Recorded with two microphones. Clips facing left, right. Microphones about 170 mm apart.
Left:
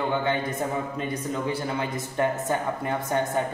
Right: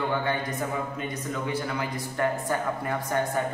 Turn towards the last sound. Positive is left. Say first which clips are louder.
# left 2 dB
turn(degrees=25)  # may be behind; listen again after turning